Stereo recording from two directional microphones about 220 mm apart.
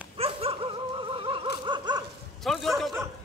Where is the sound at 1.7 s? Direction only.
20° right (ahead or behind).